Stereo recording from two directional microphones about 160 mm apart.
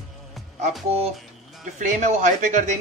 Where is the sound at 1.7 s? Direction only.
50° right (ahead or behind).